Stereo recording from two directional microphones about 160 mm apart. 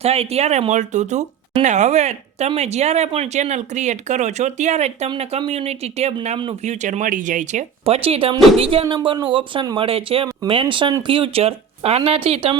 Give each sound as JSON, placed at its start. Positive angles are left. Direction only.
{"t": 0.0, "sound": "speech", "side_deg": -40}
{"t": 6.7, "sound": "speech", "side_deg": -50}
{"t": 7.9, "sound": "speech", "side_deg": -35}